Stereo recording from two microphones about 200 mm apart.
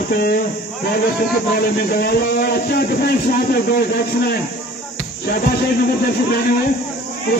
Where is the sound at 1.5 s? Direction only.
50° left (ahead or behind).